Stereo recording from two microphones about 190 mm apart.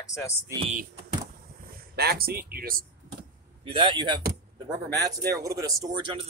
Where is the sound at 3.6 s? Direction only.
25° right (ahead or behind).